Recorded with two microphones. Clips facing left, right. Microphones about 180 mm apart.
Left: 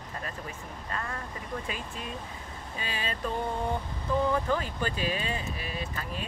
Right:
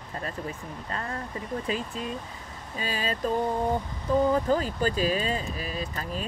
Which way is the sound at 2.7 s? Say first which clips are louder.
Right 5 dB; 40° right (ahead or behind).